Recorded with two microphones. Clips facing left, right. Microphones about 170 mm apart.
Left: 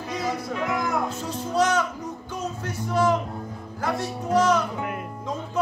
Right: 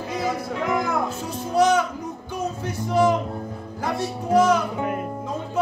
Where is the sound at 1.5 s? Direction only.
10° right (ahead or behind).